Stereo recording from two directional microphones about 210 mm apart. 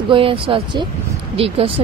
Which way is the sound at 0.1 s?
25° right (ahead or behind).